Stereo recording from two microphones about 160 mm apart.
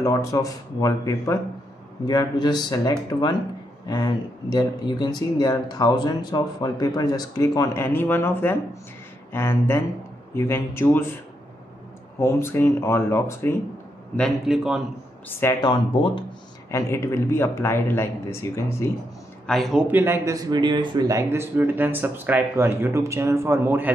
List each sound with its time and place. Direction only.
0.0 s speech: 20° left (ahead or behind)
12.2 s speech: 15° left (ahead or behind)
14.1 s a man's voice: centre (ahead or behind)
15.6 s speech: 30° left (ahead or behind)
16.7 s speech: 15° left (ahead or behind)
19.4 s a man's voice: centre (ahead or behind)